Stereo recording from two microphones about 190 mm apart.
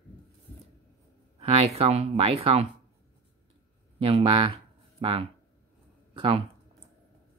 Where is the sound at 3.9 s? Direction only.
30° right (ahead or behind).